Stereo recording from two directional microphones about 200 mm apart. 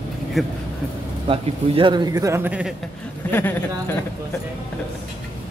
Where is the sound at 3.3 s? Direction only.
10° left (ahead or behind).